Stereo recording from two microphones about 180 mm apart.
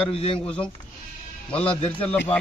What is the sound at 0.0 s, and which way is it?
Speech, 30° left (ahead or behind).